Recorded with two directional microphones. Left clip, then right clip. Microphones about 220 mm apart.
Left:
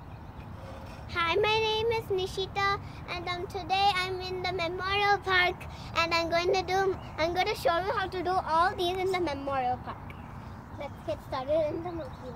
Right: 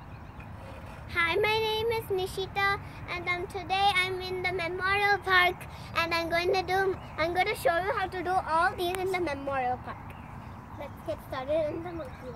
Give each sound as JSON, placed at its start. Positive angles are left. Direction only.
{"t": 1.1, "sound": "child singing", "side_deg": -5}
{"t": 10.8, "sound": "speech", "side_deg": -10}